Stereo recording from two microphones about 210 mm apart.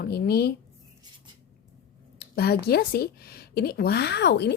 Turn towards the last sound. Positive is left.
turn(degrees=55)  # may be behind; listen again after turning